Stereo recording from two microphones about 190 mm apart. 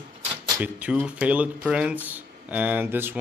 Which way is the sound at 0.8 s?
5° right (ahead or behind).